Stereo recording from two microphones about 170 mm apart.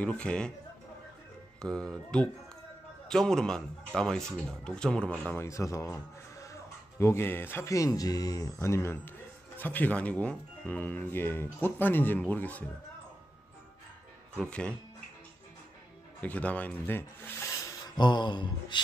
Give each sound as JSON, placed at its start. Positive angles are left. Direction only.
{"t": 0.0, "sound": "speech", "side_deg": 5}
{"t": 1.6, "sound": "speech", "side_deg": 5}
{"t": 5.3, "sound": "speech", "side_deg": 15}
{"t": 14.3, "sound": "speech", "side_deg": 5}
{"t": 16.2, "sound": "speech", "side_deg": 10}
{"t": 17.8, "sound": "speech", "side_deg": 25}